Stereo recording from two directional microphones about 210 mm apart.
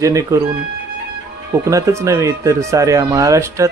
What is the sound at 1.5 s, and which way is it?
Speech, 15° right (ahead or behind).